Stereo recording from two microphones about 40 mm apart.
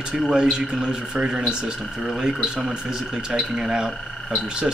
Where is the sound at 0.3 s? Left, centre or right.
Right.